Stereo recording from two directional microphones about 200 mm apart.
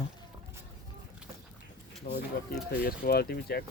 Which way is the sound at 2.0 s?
45° left (ahead or behind).